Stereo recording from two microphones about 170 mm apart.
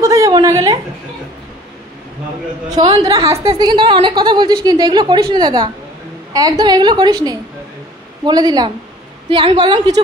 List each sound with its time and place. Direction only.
0.0 s a woman's voice: 20° right (ahead or behind)
2.7 s a woman's voice: 25° right (ahead or behind)